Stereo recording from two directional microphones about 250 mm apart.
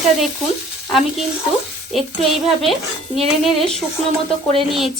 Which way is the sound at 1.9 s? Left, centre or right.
Centre.